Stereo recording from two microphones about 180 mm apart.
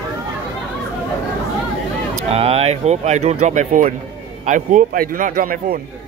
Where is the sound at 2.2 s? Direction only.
35° right (ahead or behind); by 5.8 s 55° right (ahead or behind).